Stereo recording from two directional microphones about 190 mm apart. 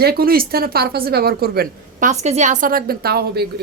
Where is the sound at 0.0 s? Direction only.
55° right (ahead or behind).